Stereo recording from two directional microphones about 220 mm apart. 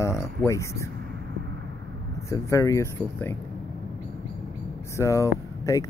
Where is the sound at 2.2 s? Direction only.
15° left (ahead or behind).